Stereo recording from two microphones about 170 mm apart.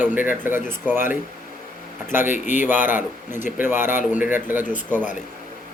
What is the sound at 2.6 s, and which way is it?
A man's voice, 10° right (ahead or behind).